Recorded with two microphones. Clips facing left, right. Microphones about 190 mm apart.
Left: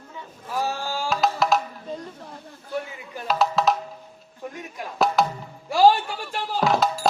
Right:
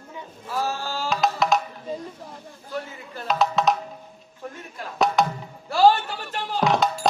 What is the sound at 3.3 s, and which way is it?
Music, centre (ahead or behind).